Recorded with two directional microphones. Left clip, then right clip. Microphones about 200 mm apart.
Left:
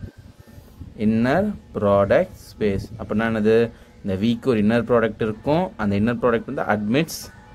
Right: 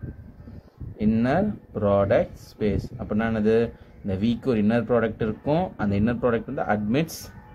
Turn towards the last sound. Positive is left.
turn(degrees=15)  # may be behind; listen again after turning